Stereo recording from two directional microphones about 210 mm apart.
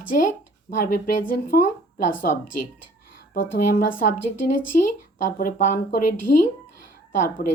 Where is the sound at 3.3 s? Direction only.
40° left (ahead or behind).